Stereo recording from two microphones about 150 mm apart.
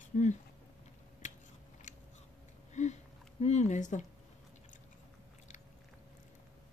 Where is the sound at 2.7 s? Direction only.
50° left (ahead or behind).